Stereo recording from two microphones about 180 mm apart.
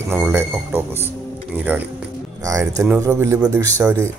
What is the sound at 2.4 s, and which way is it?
Speech, 20° right (ahead or behind).